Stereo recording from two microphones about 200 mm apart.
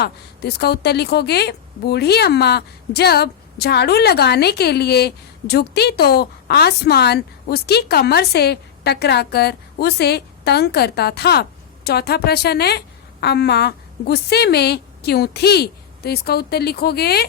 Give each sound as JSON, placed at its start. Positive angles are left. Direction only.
{"t": 0.0, "sound": "a woman's voice", "side_deg": 55}